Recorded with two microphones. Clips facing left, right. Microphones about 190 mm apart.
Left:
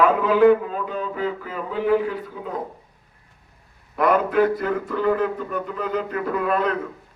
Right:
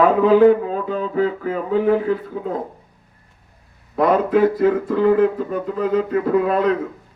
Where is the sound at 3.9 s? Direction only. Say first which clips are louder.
Right 3 dB; 25° right (ahead or behind).